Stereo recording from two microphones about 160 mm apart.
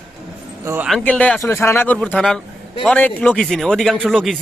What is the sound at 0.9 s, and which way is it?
Speech, 5° left (ahead or behind).